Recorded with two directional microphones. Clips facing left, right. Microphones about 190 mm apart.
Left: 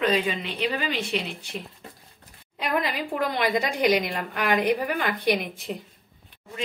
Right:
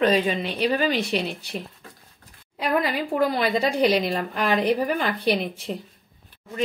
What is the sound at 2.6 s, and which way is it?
A woman's voice, 30° right (ahead or behind).